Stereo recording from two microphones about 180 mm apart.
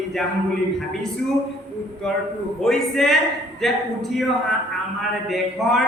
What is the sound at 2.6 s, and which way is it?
A woman's voice, centre (ahead or behind).